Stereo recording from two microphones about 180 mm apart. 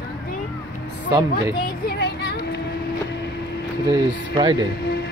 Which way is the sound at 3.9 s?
25° right (ahead or behind).